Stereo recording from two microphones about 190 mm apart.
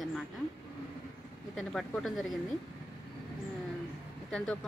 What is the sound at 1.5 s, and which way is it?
Speech, centre (ahead or behind).